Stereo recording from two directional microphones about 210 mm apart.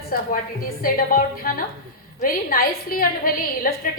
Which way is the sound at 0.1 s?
45° left (ahead or behind).